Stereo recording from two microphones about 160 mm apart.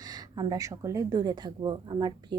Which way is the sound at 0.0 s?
25° right (ahead or behind).